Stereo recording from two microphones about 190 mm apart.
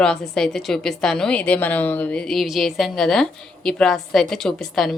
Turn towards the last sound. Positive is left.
turn(degrees=0)  # may be behind; listen again after turning